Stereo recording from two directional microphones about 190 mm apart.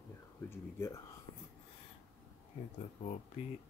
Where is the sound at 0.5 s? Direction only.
15° left (ahead or behind).